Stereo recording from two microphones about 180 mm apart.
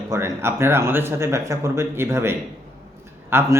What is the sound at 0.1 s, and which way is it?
A man's voice, 15° right (ahead or behind).